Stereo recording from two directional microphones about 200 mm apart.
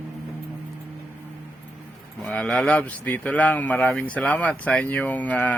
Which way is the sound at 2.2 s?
5° left (ahead or behind).